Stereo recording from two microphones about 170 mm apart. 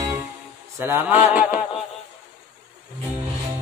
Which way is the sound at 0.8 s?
15° right (ahead or behind).